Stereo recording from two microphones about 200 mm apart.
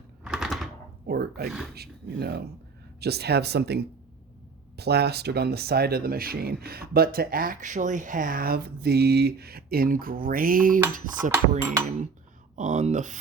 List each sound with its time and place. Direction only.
0.3 s typewriter: centre (ahead or behind)
1.0 s speech: 50° right (ahead or behind)
10.9 s cutlery: 40° right (ahead or behind)